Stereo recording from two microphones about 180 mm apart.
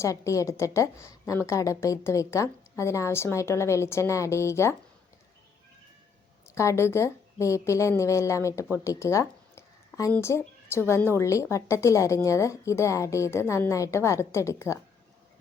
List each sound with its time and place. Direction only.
0.0 s a woman's voice: 15° left (ahead or behind)
6.5 s a woman's voice: 15° left (ahead or behind)